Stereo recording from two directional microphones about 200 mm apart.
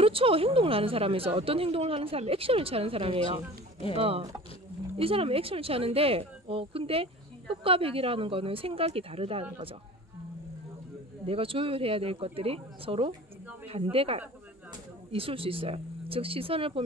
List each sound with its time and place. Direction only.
0.0 s speech: 25° right (ahead or behind)
11.2 s speech: 25° right (ahead or behind)